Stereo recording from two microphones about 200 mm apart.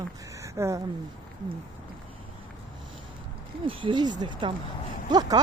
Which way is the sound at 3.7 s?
25° right (ahead or behind).